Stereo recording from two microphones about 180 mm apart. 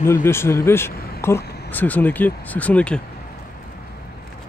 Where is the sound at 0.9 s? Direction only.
55° left (ahead or behind).